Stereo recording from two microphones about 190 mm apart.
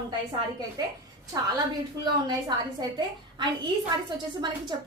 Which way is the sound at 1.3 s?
20° right (ahead or behind).